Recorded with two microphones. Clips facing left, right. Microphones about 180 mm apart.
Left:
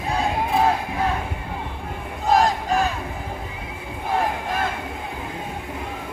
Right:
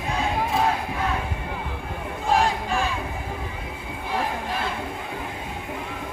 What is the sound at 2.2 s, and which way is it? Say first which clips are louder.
Battle cry: left 3 dB; 40° left (ahead or behind).